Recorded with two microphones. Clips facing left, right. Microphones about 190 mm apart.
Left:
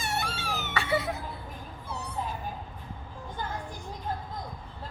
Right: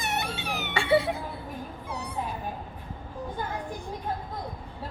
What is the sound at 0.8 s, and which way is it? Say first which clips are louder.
Music: right 8 dB; 30° right (ahead or behind).